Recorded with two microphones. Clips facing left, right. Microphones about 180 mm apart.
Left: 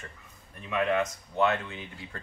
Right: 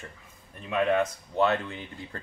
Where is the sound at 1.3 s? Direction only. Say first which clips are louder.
Right 2 dB; 35° right (ahead or behind).